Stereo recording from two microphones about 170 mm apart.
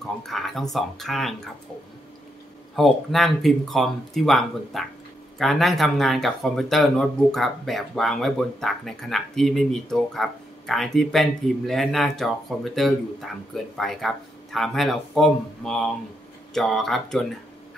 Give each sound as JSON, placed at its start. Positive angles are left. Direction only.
{"t": 0.3, "sound": "speech", "side_deg": 0}
{"t": 2.7, "sound": "speech", "side_deg": 0}